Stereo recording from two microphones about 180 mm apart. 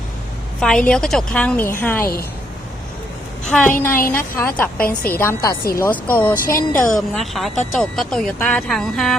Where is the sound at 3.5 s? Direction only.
10° left (ahead or behind).